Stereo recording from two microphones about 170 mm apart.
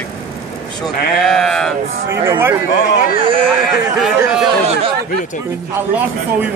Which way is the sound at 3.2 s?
30° right (ahead or behind).